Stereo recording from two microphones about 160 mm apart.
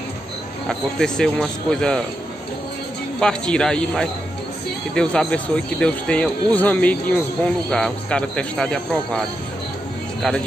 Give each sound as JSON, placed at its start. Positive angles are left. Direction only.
{"t": 0.7, "sound": "speech", "side_deg": 5}
{"t": 3.2, "sound": "speech", "side_deg": 5}